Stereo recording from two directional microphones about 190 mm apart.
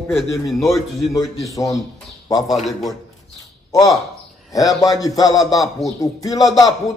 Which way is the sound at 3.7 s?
20° left (ahead or behind).